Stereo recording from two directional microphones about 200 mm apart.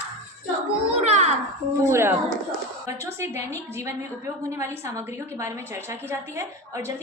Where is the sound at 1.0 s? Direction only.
35° right (ahead or behind).